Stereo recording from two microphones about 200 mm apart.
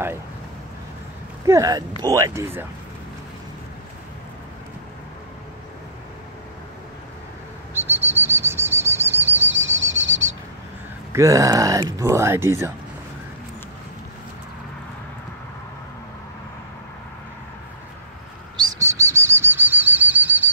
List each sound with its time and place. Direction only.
1.4 s speech: 15° right (ahead or behind)
7.7 s bird flight: 10° right (ahead or behind)
9.5 s bird flight: 70° right (ahead or behind)
11.1 s speech: 15° right (ahead or behind)
18.6 s bird flight: 15° right (ahead or behind)